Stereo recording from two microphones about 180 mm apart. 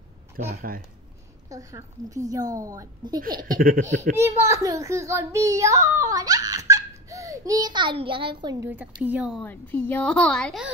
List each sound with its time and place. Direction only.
0.6 s speech: 55° right (ahead or behind)
1.5 s a woman's voice: 15° right (ahead or behind)
3.2 s speech: 50° right (ahead or behind)
3.9 s a child's voice: 40° right (ahead or behind)
4.2 s a child's voice: 15° right (ahead or behind)
6.7 s a sound: 20° right (ahead or behind)
9.0 s a child's voice: 5° right (ahead or behind)
9.4 s a woman's voice: 10° left (ahead or behind)